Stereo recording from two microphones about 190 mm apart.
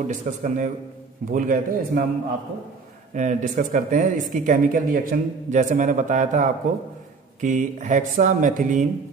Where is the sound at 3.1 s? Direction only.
40° right (ahead or behind).